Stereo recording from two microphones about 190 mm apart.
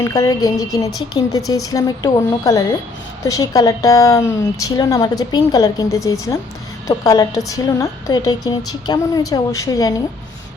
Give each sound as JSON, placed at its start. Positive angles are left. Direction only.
{"t": 0.0, "sound": "a woman's voice", "side_deg": 20}